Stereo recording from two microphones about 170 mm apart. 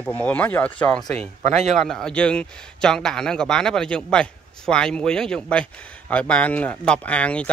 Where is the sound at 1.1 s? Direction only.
40° right (ahead or behind).